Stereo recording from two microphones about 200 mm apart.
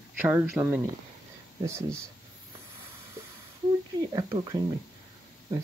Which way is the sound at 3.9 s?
20° right (ahead or behind).